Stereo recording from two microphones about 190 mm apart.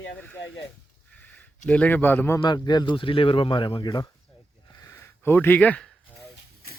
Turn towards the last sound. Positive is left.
turn(degrees=5)  # may be behind; listen again after turning